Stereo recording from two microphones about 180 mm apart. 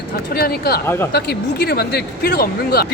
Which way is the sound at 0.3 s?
55° left (ahead or behind).